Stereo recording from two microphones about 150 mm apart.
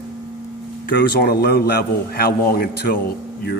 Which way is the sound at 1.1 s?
90° left.